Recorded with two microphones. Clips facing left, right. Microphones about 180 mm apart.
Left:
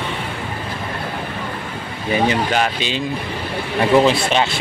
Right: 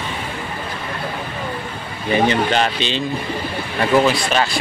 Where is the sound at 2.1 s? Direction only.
5° left (ahead or behind).